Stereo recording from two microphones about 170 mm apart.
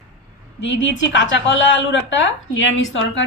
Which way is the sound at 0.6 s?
90° left.